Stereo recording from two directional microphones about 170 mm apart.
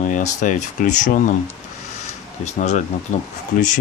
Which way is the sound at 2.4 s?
45° left (ahead or behind).